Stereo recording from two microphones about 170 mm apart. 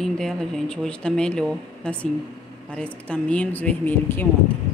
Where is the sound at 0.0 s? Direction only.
5° left (ahead or behind).